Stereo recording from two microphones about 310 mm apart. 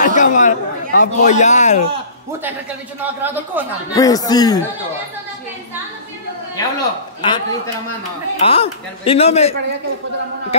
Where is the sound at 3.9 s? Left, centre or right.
Centre.